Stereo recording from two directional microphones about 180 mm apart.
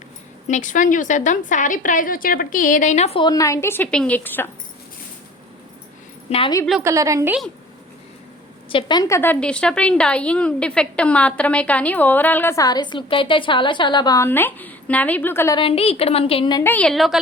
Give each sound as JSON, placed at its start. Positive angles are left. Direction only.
{"t": 0.4, "sound": "a woman's voice", "side_deg": 45}
{"t": 3.2, "sound": "a woman's voice", "side_deg": 20}
{"t": 6.3, "sound": "a woman's voice", "side_deg": 35}
{"t": 6.8, "sound": "a woman's voice", "side_deg": -15}
{"t": 8.7, "sound": "a woman's voice", "side_deg": 25}
{"t": 15.5, "sound": "a woman's voice", "side_deg": 30}
{"t": 16.6, "sound": "a woman's voice", "side_deg": 10}